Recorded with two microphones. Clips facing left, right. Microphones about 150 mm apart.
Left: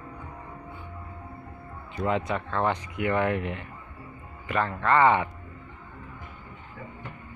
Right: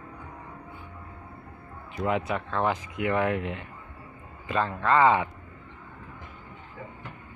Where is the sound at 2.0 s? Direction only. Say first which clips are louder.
Even; 10° right (ahead or behind).